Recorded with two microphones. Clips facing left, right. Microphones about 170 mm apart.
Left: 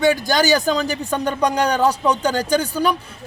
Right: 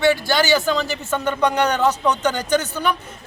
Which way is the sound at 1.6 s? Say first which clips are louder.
Left 1 dB; 10° left (ahead or behind).